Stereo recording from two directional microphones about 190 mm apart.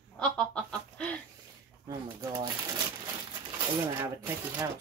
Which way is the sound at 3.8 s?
20° right (ahead or behind).